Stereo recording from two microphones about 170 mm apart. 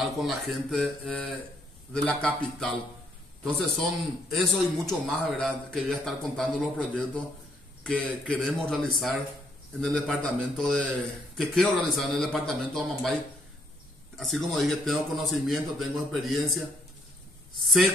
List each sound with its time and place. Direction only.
0.0 s a man's voice: centre (ahead or behind)
14.1 s a man's voice: centre (ahead or behind)